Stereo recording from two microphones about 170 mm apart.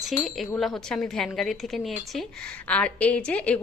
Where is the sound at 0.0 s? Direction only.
Centre (ahead or behind).